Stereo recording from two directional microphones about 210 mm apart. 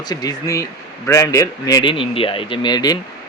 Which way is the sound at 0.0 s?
20° left (ahead or behind).